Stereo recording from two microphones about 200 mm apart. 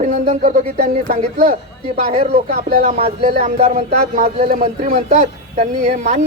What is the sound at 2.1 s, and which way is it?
Speech, 30° right (ahead or behind).